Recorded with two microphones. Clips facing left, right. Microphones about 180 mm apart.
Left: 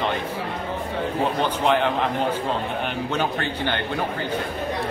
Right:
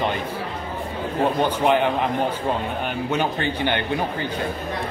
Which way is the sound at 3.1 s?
10° right (ahead or behind).